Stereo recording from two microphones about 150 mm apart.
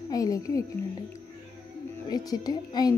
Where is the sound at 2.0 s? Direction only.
25° left (ahead or behind).